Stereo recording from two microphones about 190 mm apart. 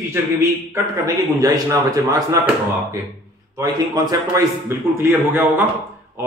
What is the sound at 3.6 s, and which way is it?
A man's voice, 20° right (ahead or behind).